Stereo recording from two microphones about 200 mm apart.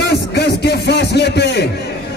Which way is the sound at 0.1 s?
55° left (ahead or behind).